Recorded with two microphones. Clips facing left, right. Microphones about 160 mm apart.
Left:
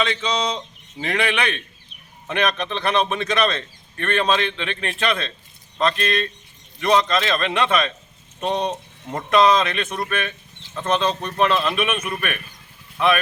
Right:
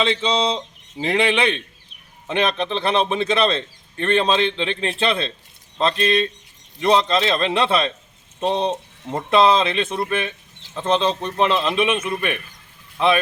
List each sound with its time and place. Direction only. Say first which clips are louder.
0.0 s a man's voice: right 3 dB; 25° right (ahead or behind)